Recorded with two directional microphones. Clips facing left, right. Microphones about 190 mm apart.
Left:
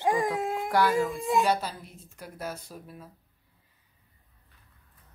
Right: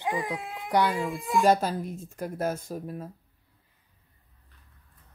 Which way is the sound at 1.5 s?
45° right (ahead or behind).